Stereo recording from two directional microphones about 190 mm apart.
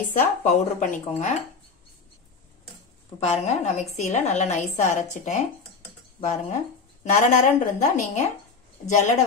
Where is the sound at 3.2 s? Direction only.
35° left (ahead or behind).